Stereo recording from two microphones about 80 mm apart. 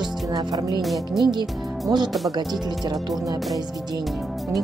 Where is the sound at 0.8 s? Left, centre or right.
Centre.